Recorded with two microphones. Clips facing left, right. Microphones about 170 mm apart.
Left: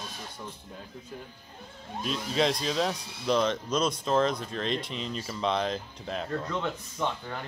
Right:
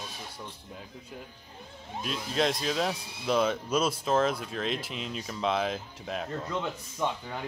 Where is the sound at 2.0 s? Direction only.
Centre (ahead or behind).